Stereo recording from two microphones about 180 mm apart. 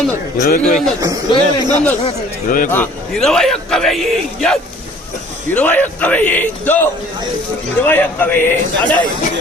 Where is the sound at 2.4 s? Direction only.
50° left (ahead or behind).